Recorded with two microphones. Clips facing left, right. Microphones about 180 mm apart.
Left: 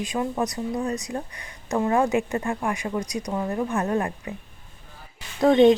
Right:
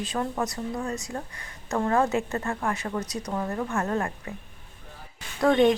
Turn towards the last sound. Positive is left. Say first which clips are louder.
# left 4 dB
turn(degrees=20)  # may be behind; listen again after turning